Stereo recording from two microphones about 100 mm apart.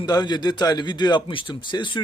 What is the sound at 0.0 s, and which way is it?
A man's voice, 45° left (ahead or behind).